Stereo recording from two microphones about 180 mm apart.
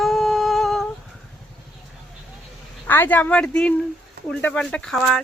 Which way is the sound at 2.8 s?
10° left (ahead or behind).